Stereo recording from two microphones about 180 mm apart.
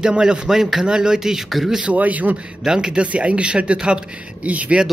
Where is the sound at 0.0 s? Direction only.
5° right (ahead or behind).